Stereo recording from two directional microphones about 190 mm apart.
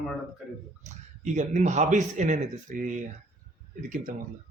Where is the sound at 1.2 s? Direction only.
40° right (ahead or behind).